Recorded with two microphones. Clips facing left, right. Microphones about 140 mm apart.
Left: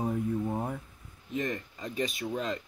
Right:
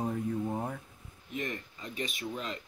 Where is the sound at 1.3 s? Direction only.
35° left (ahead or behind).